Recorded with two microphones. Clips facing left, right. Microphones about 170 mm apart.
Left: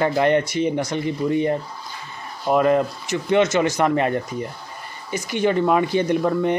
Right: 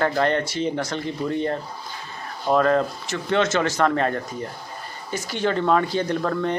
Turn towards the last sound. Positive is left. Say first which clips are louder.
# left 4 dB
turn(degrees=15)  # may be behind; listen again after turning